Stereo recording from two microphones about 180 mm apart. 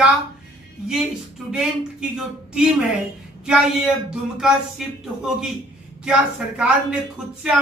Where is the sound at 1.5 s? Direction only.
5° right (ahead or behind).